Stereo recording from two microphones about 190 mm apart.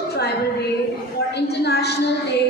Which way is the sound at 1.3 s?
60° left (ahead or behind).